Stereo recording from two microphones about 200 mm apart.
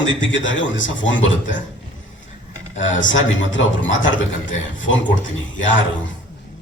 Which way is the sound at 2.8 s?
70° left (ahead or behind).